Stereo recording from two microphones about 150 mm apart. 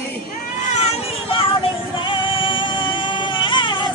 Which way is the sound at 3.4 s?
30° left (ahead or behind).